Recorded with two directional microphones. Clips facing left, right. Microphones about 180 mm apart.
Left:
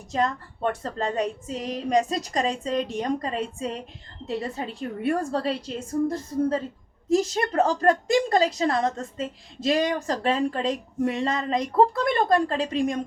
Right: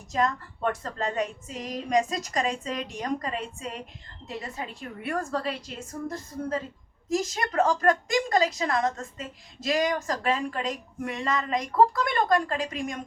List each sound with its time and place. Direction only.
0.1 s a woman's voice: 30° left (ahead or behind)